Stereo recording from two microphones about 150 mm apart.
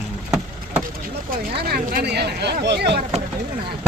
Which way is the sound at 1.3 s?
90° right.